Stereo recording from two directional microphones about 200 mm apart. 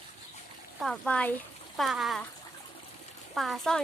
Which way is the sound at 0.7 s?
Centre (ahead or behind).